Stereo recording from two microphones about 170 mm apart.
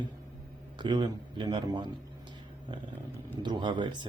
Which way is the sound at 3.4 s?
25° right (ahead or behind).